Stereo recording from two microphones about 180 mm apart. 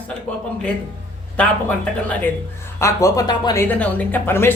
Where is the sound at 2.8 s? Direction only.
20° left (ahead or behind).